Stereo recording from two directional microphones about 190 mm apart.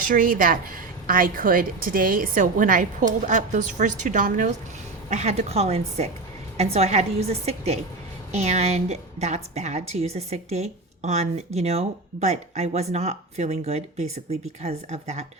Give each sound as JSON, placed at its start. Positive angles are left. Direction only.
{"t": 0.0, "sound": "a woman's voice", "side_deg": -45}